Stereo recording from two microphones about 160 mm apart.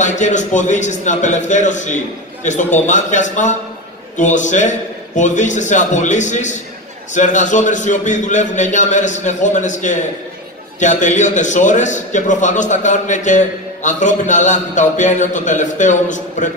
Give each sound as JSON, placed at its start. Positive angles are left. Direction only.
{"t": 0.0, "sound": "a man's voice", "side_deg": 50}